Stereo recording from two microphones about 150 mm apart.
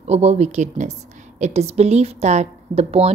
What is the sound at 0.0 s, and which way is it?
A woman's voice, 45° right (ahead or behind).